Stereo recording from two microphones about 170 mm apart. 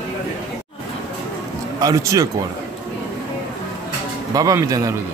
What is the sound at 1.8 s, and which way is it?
Speech, 20° right (ahead or behind).